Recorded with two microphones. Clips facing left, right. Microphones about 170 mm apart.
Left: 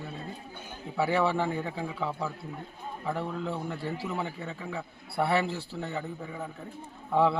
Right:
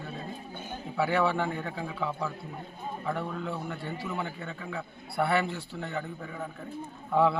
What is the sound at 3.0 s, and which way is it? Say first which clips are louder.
Speech: left 1 dB; centre (ahead or behind).